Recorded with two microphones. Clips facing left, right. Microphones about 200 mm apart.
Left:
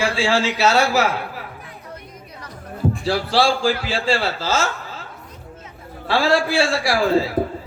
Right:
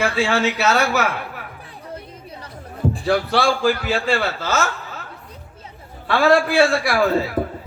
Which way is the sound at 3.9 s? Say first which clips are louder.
Even; 30° left (ahead or behind).